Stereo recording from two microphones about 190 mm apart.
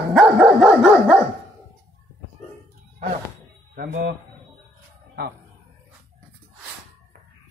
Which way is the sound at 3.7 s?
45° right (ahead or behind).